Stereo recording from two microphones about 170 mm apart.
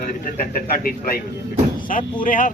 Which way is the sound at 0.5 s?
55° left (ahead or behind).